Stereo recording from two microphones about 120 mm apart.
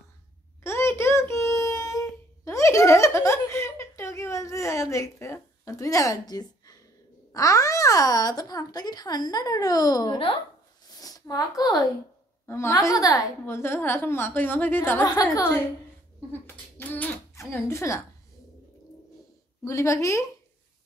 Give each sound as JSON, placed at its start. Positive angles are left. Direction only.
{"t": 0.7, "sound": "child singing", "side_deg": 20}
{"t": 7.3, "sound": "a child's voice", "side_deg": 30}
{"t": 11.0, "sound": "a woman's voice", "side_deg": 30}
{"t": 13.6, "sound": "a woman's voice", "side_deg": 20}
{"t": 15.0, "sound": "a child's voice", "side_deg": 30}
{"t": 16.3, "sound": "a sound", "side_deg": 15}
{"t": 19.6, "sound": "a woman's voice", "side_deg": 25}